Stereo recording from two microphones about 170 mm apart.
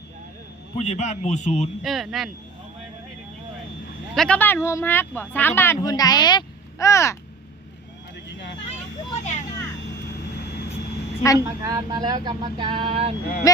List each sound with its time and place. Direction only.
0.8 s a man's voice: 40° left (ahead or behind)
1.8 s speech: centre (ahead or behind)
4.1 s speech: 5° left (ahead or behind)
8.3 s vehicle: 90° left
9.1 s vehicle: 45° left (ahead or behind)
11.2 s speech: 20° left (ahead or behind)
11.4 s speech: 20° right (ahead or behind)